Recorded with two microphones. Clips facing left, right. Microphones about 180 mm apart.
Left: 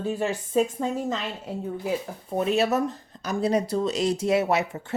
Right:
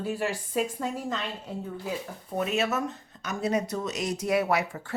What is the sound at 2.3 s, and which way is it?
Speech, 30° left (ahead or behind).